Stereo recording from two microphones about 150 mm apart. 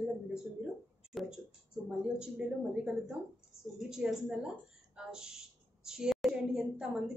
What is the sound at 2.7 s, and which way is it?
A woman's voice, 5° right (ahead or behind).